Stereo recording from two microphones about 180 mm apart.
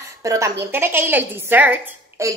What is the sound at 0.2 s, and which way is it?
A woman's voice, 15° right (ahead or behind).